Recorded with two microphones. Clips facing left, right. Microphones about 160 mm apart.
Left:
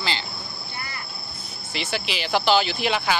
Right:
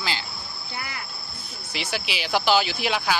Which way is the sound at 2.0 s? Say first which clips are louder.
Left 1 dB; 10° right (ahead or behind).